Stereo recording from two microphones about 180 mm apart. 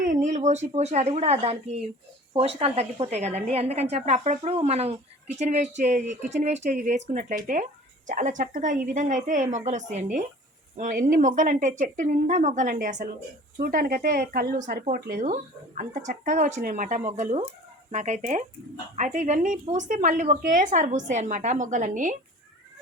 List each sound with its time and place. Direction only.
0.0 s a woman's voice: 45° right (ahead or behind)
15.2 s a woman's voice: 40° right (ahead or behind)